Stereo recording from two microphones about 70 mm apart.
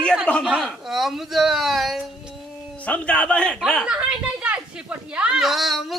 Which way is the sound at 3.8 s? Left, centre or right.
Centre.